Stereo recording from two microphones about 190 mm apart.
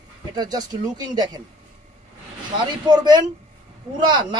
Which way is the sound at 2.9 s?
20° right (ahead or behind).